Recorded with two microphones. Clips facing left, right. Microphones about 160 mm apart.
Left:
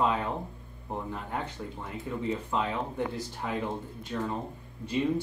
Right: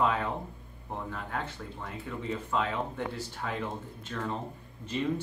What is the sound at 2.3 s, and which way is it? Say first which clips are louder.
Speech: even; 15° left (ahead or behind).